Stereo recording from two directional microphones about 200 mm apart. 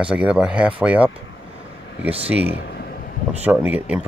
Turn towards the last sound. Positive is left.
turn(degrees=-5)  # may be behind; listen again after turning